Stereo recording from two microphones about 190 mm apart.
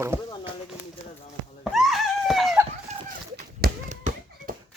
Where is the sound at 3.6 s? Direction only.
55° right (ahead or behind).